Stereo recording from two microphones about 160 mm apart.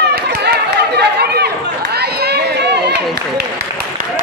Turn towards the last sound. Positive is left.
turn(degrees=-90)